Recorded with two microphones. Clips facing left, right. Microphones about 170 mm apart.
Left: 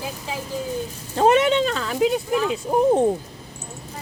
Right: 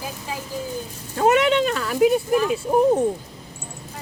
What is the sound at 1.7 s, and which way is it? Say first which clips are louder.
Speech: right 3 dB; 5° right (ahead or behind).